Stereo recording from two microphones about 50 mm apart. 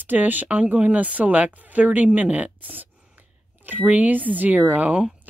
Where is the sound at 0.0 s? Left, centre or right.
Right.